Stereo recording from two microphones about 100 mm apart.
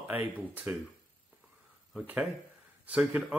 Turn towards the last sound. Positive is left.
turn(degrees=-15)  # may be behind; listen again after turning